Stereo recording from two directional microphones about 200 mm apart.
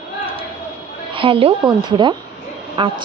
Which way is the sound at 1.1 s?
25° right (ahead or behind).